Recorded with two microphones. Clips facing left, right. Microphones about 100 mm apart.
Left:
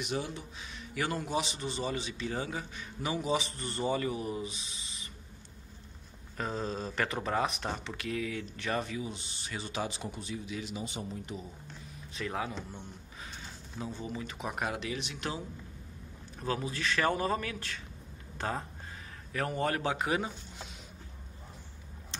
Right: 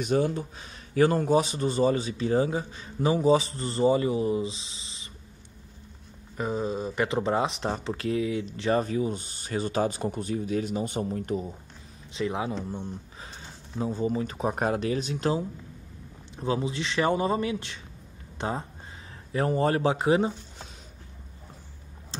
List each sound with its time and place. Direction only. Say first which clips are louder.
0.0 s speech: right 10 dB; 45° right (ahead or behind); by 5.1 s 25° right (ahead or behind)
6.3 s speech: right 6 dB; 10° right (ahead or behind)
7.1 s speech: right 6 dB; 25° right (ahead or behind)
8.8 s speech: right 10 dB; 45° right (ahead or behind)
12.2 s speech: right 7 dB; 25° right (ahead or behind)
16.3 s speech: right 6 dB; 20° right (ahead or behind)
22.1 s a sound: right 7 dB; 30° right (ahead or behind)